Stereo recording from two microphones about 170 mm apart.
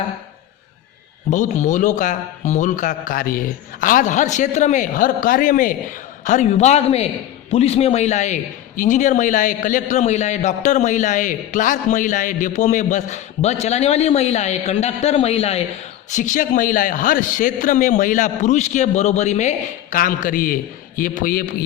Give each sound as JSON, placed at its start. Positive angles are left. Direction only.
{"t": 1.3, "sound": "a man's voice", "side_deg": 45}